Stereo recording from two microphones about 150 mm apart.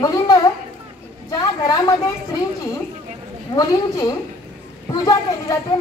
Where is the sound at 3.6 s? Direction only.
25° left (ahead or behind).